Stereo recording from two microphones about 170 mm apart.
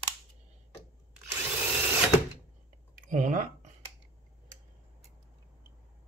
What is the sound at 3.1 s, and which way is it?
Speech, 50° right (ahead or behind).